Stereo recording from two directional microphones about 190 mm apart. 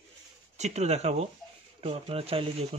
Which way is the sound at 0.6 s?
35° right (ahead or behind).